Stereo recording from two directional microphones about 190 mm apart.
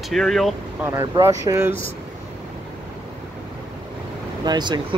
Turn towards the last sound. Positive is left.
turn(degrees=-20)  # may be behind; listen again after turning